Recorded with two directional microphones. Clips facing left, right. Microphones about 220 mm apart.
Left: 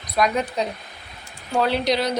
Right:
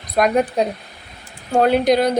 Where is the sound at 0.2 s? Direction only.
55° right (ahead or behind).